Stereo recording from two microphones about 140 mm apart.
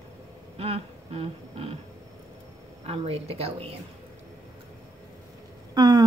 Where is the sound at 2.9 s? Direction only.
45° right (ahead or behind).